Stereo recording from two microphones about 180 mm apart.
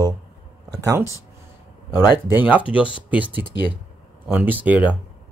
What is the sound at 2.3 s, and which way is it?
Speech, 10° right (ahead or behind).